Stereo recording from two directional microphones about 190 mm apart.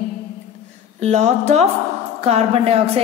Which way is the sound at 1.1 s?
35° right (ahead or behind).